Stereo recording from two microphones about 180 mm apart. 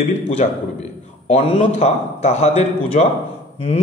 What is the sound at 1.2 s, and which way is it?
A man's voice, 35° left (ahead or behind).